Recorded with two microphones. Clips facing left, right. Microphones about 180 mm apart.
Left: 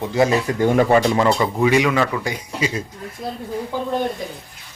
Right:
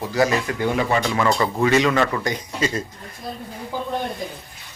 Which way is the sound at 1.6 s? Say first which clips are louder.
Left 1 dB; 10° left (ahead or behind).